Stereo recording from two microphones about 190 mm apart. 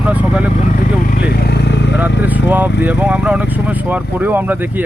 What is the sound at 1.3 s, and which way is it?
Vehicle, 60° left (ahead or behind).